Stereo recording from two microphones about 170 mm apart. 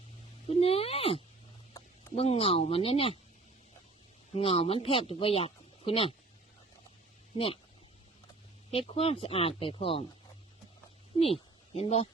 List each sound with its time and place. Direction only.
0.5 s speech: 35° left (ahead or behind)
4.4 s speech: 35° left (ahead or behind)
7.3 s speech: 35° left (ahead or behind)
8.7 s speech: 35° left (ahead or behind)
11.2 s a woman's voice: 35° left (ahead or behind)